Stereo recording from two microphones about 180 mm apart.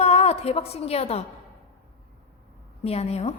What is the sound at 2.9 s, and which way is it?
Speech, 35° left (ahead or behind).